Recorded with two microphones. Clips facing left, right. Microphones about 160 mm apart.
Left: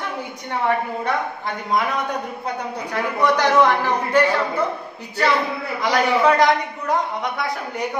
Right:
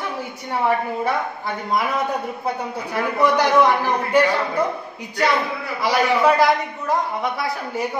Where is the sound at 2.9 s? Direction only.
10° right (ahead or behind).